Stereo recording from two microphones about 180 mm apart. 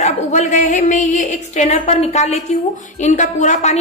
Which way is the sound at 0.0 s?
40° left (ahead or behind).